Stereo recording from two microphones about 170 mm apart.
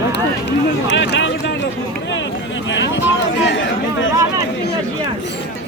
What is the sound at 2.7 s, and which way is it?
Speech, 90° left.